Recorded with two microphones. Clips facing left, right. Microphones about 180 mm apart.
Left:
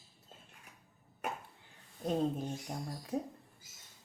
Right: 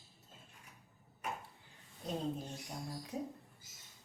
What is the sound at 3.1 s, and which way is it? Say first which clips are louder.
Speech: left 5 dB; 55° left (ahead or behind).